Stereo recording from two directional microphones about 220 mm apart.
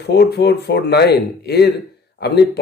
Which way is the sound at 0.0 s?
50° left (ahead or behind).